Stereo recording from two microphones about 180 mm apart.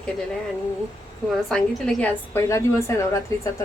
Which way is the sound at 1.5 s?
5° left (ahead or behind).